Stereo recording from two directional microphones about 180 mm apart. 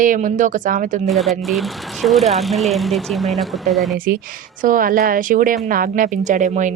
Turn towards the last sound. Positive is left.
turn(degrees=-40)  # may be behind; listen again after turning